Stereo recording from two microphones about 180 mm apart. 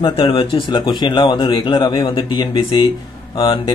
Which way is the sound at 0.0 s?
30° left (ahead or behind).